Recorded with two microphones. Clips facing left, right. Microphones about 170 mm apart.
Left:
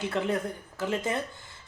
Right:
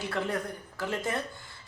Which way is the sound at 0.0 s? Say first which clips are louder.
Left 3 dB; 20° left (ahead or behind).